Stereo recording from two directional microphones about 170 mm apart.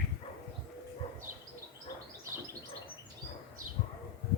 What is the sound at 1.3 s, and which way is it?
Bird, 50° right (ahead or behind).